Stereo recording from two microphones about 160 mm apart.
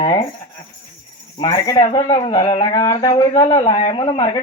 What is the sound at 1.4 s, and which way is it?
Speech, 25° left (ahead or behind).